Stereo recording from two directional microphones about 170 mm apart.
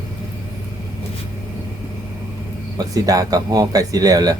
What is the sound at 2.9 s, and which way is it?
Speech, 20° right (ahead or behind).